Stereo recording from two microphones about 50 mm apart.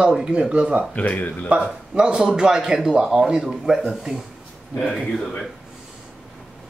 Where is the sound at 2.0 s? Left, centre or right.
Centre.